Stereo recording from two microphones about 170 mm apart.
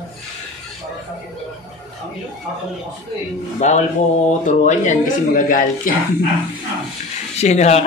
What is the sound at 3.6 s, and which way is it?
Speech, 45° left (ahead or behind).